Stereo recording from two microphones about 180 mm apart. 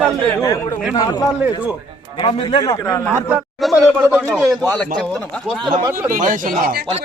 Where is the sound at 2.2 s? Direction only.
25° left (ahead or behind).